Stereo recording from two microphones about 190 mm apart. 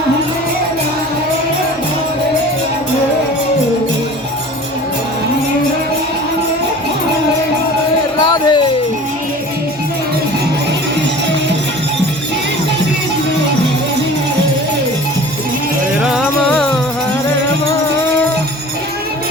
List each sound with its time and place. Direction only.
8.2 s music: 20° left (ahead or behind)
16.1 s music: 5° left (ahead or behind)